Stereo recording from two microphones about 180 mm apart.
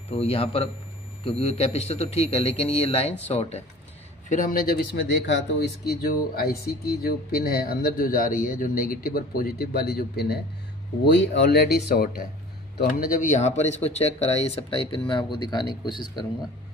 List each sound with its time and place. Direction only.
0.1 s speech: 35° left (ahead or behind)
4.3 s speech: 50° left (ahead or behind); by 16.3 s 25° left (ahead or behind)